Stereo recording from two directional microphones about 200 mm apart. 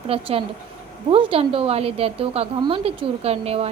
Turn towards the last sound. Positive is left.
turn(degrees=-30)  # may be behind; listen again after turning